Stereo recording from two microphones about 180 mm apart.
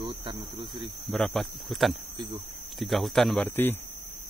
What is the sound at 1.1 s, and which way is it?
Speech, centre (ahead or behind).